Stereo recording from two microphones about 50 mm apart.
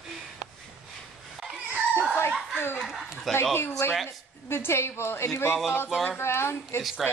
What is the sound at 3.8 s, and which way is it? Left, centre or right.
A woman's voice, left.